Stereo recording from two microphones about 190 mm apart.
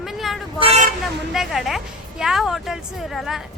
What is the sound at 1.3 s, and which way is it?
A woman's voice, centre (ahead or behind).